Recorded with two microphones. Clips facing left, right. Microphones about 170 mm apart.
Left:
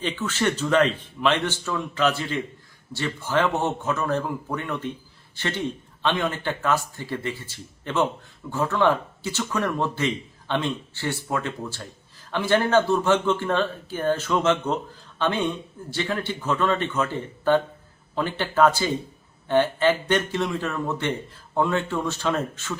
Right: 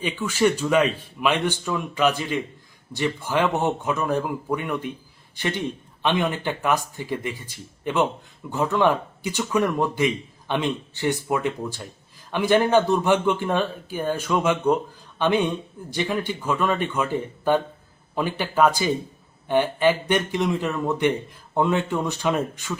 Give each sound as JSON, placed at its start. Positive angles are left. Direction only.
{"t": 0.0, "sound": "speech", "side_deg": -10}